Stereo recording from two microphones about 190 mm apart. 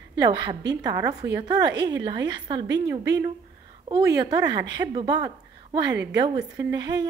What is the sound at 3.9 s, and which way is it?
A woman's voice, 20° right (ahead or behind).